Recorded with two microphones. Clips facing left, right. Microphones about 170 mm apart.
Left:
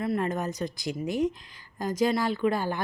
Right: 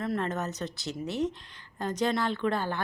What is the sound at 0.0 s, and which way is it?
A woman's voice, 10° left (ahead or behind).